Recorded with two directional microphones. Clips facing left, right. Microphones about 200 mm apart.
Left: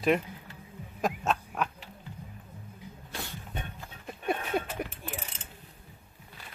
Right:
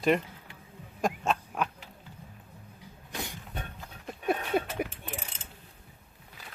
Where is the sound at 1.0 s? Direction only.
Centre (ahead or behind).